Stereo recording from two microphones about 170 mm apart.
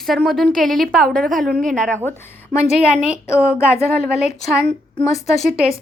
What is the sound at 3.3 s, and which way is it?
Speech, 5° right (ahead or behind).